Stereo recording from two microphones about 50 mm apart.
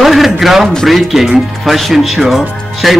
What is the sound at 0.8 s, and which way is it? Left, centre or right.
Speech, centre.